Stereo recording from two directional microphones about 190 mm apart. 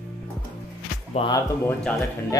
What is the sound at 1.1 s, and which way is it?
Music, 25° left (ahead or behind).